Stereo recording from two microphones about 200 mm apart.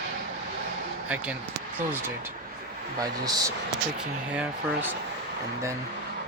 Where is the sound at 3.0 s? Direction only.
20° right (ahead or behind).